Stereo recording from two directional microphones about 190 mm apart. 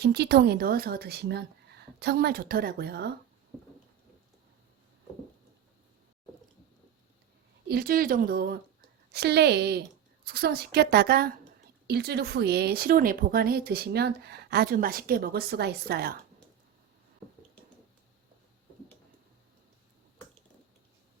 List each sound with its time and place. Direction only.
0.0 s a woman's voice: 60° right (ahead or behind)
7.7 s a woman's voice: 50° right (ahead or behind)